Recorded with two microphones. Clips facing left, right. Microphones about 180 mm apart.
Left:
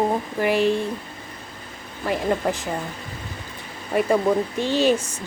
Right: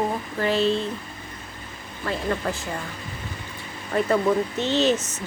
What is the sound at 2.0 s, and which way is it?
Speech, 15° left (ahead or behind).